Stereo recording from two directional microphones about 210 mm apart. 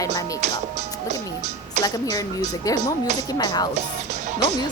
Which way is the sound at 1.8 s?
15° left (ahead or behind).